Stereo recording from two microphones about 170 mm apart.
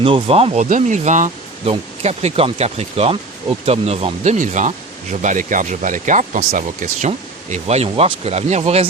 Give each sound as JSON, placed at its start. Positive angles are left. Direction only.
{"t": 0.0, "sound": "speech", "side_deg": -35}